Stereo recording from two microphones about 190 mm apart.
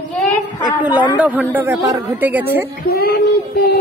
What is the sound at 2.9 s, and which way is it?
Speech, 55° left (ahead or behind).